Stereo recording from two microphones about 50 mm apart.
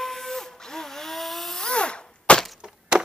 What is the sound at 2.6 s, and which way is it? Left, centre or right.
Wood, centre.